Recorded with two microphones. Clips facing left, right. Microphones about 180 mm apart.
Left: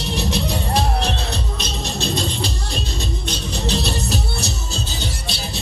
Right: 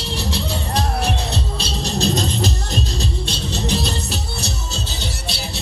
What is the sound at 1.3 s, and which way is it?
Music, 35° right (ahead or behind).